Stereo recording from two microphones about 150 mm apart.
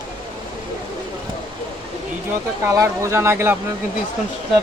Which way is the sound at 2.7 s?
20° right (ahead or behind).